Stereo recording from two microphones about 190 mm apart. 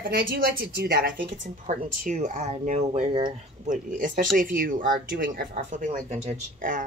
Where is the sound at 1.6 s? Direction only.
40° right (ahead or behind).